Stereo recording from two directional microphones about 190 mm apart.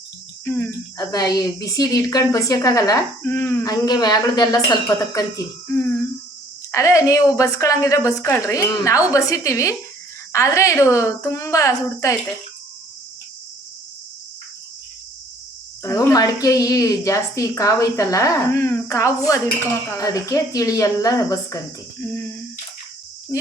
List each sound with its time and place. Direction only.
0.4 s speech: 10° left (ahead or behind)
6.7 s a woman's voice: 15° left (ahead or behind)
15.8 s a woman's voice: 20° left (ahead or behind)